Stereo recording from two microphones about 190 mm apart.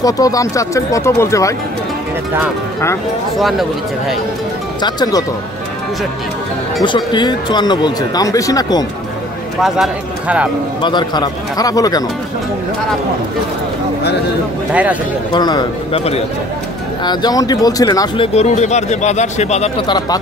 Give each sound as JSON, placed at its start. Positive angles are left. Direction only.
{"t": 0.0, "sound": "speech", "side_deg": 20}
{"t": 3.3, "sound": "speech", "side_deg": 0}
{"t": 4.8, "sound": "speech", "side_deg": 20}
{"t": 6.8, "sound": "speech", "side_deg": 25}
{"t": 9.6, "sound": "speech", "side_deg": -5}
{"t": 10.8, "sound": "speech", "side_deg": 25}
{"t": 14.7, "sound": "speech", "side_deg": -5}
{"t": 15.3, "sound": "speech", "side_deg": 20}
{"t": 17.0, "sound": "speech", "side_deg": 20}